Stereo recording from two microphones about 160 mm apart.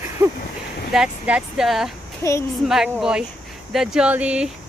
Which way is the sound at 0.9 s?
5° right (ahead or behind).